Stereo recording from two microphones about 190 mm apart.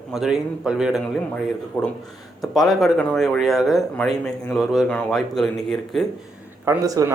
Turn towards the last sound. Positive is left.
turn(degrees=-15)  # may be behind; listen again after turning